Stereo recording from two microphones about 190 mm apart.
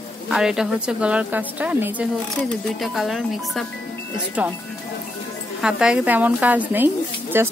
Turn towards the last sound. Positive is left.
turn(degrees=-10)  # may be behind; listen again after turning